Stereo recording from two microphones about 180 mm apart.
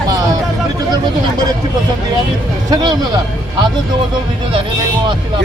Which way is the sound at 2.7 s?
20° right (ahead or behind).